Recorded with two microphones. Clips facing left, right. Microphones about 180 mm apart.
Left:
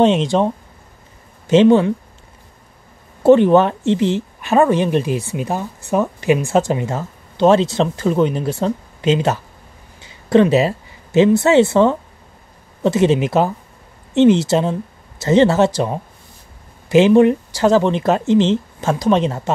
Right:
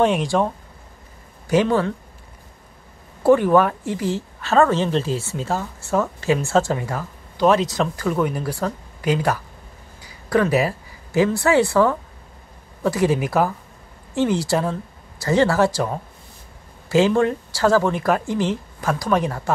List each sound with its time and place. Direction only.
0.0 s speech: 20° left (ahead or behind)
1.5 s speech: 25° left (ahead or behind)
3.3 s speech: 25° left (ahead or behind)